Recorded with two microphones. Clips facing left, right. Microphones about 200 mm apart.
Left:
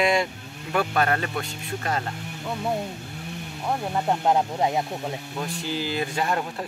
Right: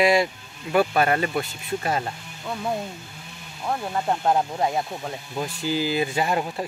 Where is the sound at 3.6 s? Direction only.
15° left (ahead or behind).